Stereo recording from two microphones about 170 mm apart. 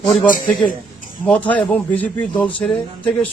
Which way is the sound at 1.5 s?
10° left (ahead or behind).